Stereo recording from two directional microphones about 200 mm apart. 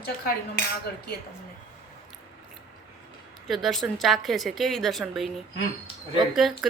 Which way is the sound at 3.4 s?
Centre (ahead or behind).